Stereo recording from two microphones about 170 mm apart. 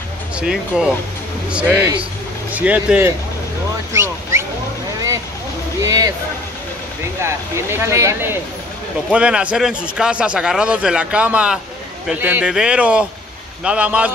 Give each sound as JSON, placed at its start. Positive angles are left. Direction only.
{"t": 0.4, "sound": "speech", "side_deg": -5}
{"t": 5.8, "sound": "a sound", "side_deg": -20}
{"t": 7.2, "sound": "speech", "side_deg": -15}